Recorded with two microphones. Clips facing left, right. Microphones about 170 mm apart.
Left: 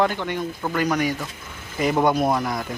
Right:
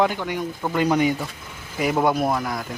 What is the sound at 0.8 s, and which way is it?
Speech, 25° right (ahead or behind).